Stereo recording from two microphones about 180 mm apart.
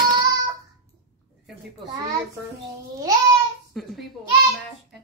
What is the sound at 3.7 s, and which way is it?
Speech, centre (ahead or behind).